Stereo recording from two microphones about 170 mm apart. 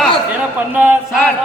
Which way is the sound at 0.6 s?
10° right (ahead or behind).